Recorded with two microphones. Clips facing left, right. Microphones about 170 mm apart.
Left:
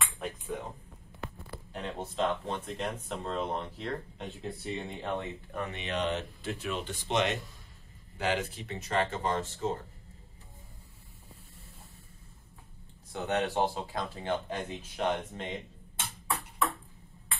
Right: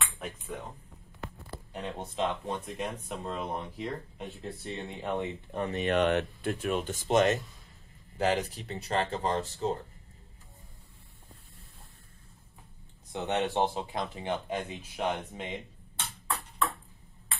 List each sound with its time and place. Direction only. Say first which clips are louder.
0.0 s speech: left 2 dB; centre (ahead or behind)
1.7 s speech: even; 10° right (ahead or behind)
4.4 s speech: left 2 dB; centre (ahead or behind)
5.2 s speech: right 4 dB; 30° right (ahead or behind)
5.8 s speech: right 7 dB; 55° right (ahead or behind); by 9.7 s 35° right (ahead or behind)
13.1 s speech: right 1 dB; 20° right (ahead or behind)
14.5 s speech: right 2 dB; 10° right (ahead or behind)